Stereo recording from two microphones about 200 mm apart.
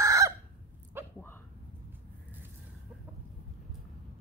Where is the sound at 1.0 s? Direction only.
10° right (ahead or behind).